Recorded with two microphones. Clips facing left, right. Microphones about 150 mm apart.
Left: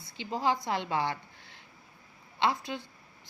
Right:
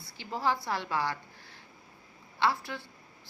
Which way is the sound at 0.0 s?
20° left (ahead or behind).